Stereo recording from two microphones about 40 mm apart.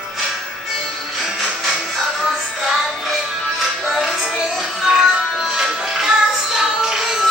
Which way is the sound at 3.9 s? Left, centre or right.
Centre.